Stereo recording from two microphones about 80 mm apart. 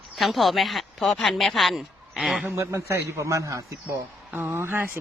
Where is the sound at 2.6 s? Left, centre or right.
Right.